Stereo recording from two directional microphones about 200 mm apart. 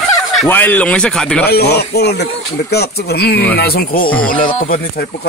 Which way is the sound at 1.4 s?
50° left (ahead or behind).